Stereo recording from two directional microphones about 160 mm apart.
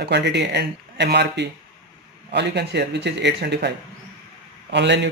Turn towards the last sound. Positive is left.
turn(degrees=-90)